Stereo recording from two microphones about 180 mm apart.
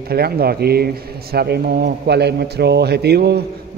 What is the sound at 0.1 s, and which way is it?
A man's voice, 60° right (ahead or behind).